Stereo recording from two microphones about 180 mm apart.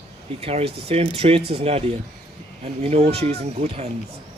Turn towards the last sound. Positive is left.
turn(degrees=-35)  # may be behind; listen again after turning